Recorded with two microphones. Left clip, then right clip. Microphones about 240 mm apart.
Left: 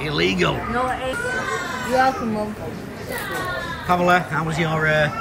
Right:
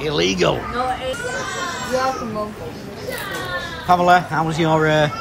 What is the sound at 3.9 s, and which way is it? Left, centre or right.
Speech, centre.